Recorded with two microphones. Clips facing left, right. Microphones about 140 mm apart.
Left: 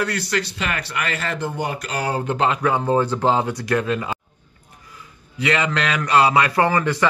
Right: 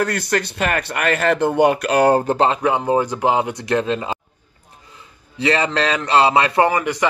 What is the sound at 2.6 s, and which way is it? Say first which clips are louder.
Speech: right 1 dB; 20° right (ahead or behind).